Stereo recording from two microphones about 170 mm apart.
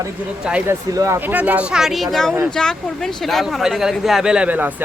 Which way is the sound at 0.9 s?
15° right (ahead or behind).